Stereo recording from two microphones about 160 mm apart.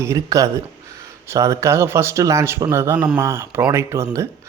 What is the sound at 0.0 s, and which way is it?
Speech, 20° right (ahead or behind).